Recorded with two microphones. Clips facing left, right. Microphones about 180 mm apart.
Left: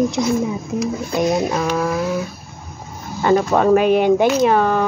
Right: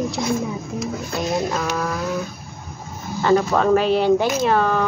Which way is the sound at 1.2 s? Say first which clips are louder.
Left 5 dB; 15° left (ahead or behind).